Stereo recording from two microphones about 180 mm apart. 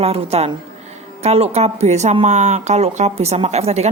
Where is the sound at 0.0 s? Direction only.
35° right (ahead or behind).